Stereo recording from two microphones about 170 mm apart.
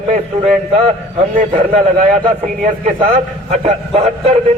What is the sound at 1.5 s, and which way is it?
Speech, 35° right (ahead or behind).